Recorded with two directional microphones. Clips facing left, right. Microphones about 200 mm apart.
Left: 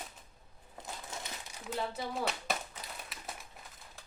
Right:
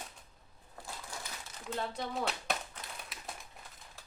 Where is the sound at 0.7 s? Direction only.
20° left (ahead or behind).